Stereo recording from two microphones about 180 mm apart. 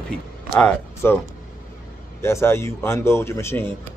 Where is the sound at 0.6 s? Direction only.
5° left (ahead or behind).